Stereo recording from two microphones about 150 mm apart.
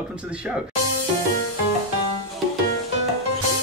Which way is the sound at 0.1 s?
10° right (ahead or behind).